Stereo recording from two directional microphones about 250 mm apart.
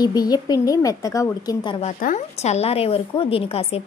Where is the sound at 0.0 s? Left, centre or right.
Centre.